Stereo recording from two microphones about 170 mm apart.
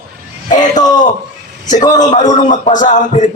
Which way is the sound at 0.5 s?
45° left (ahead or behind).